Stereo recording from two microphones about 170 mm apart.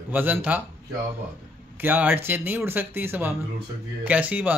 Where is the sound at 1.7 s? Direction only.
10° right (ahead or behind).